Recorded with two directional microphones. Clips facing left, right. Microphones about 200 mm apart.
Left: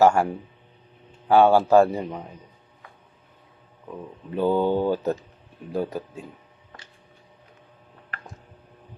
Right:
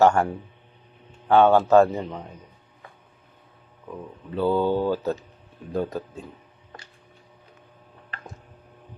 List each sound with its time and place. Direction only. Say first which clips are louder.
0.0 s speech: even; 10° left (ahead or behind)
1.3 s speech: even; 10° left (ahead or behind)
4.4 s speech: left 1 dB; 15° left (ahead or behind)